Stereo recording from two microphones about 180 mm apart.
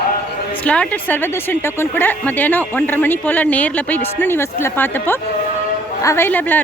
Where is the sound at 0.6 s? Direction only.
5° left (ahead or behind).